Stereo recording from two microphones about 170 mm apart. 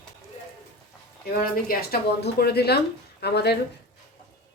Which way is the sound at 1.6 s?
70° left (ahead or behind).